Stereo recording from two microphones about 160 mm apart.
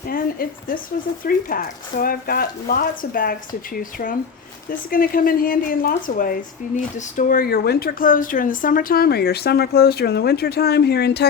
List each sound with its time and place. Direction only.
0.1 s speech: 65° left (ahead or behind); by 11.3 s 90° left